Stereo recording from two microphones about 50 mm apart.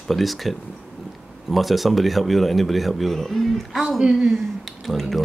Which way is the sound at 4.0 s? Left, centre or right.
Centre.